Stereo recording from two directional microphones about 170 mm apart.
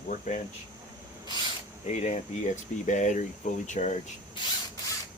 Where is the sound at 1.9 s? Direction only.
45° left (ahead or behind).